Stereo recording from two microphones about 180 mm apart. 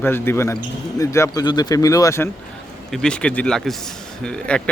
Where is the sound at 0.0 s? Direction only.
10° left (ahead or behind).